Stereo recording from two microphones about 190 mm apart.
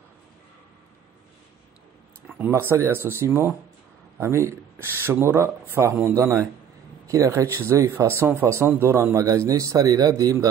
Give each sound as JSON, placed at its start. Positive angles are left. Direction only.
{"t": 2.2, "sound": "speech", "side_deg": -5}